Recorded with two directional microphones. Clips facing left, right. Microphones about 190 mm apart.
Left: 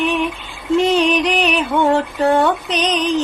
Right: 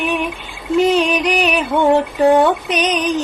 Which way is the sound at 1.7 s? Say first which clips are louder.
Right 3 dB; 15° right (ahead or behind).